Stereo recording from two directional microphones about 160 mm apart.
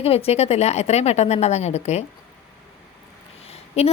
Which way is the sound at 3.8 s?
40° left (ahead or behind).